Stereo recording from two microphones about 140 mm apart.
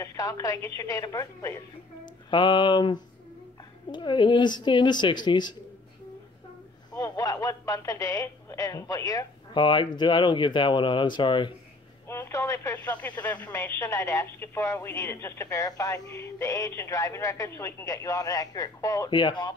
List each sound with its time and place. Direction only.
0.0 s a woman's voice: 25° left (ahead or behind)
6.9 s a woman's voice: 25° left (ahead or behind)
12.1 s speech: 15° left (ahead or behind); by 19.5 s 35° left (ahead or behind)